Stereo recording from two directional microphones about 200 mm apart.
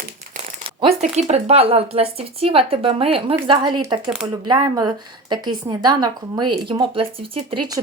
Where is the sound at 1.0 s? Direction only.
35° right (ahead or behind).